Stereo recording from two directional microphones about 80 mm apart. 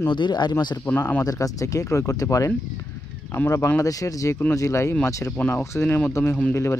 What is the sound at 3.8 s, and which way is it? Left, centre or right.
Speech, left.